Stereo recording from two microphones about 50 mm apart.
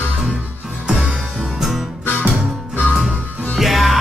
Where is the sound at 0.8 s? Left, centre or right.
Right.